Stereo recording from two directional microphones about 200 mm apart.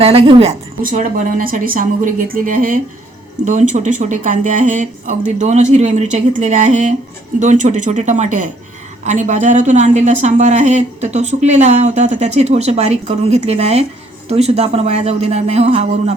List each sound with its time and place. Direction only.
0.0 s a woman's voice: 30° right (ahead or behind)
0.8 s speech: 45° right (ahead or behind)